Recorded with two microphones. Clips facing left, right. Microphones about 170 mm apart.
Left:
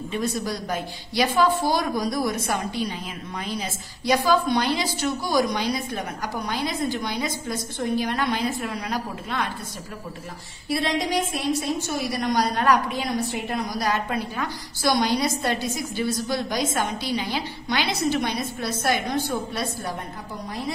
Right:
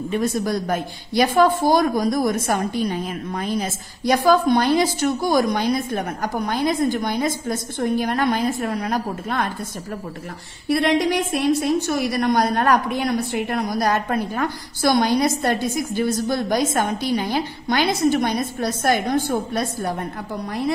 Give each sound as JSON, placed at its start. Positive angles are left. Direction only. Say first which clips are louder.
{"t": 0.1, "sound": "a woman's voice", "louder": "right 5 dB", "side_deg": -50}
{"t": 10.7, "sound": "a woman's voice", "louder": "right 6 dB", "side_deg": -60}